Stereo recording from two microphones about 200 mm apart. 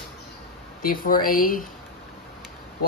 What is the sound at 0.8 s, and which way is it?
Speech, 45° left (ahead or behind).